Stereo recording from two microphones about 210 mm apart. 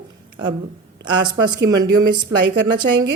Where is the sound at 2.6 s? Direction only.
20° right (ahead or behind).